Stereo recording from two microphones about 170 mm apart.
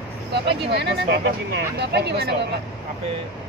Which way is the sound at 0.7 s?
75° right (ahead or behind).